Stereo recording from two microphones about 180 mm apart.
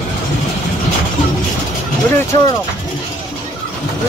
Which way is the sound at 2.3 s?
25° left (ahead or behind).